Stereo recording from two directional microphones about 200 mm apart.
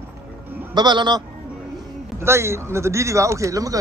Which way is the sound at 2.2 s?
15° right (ahead or behind).